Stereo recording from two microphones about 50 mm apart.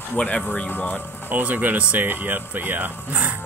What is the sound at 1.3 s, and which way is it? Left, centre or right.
Speech, right.